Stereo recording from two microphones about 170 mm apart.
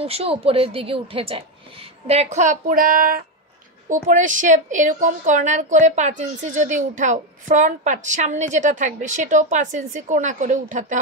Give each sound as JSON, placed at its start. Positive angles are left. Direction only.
{"t": 0.0, "sound": "a woman's voice", "side_deg": -35}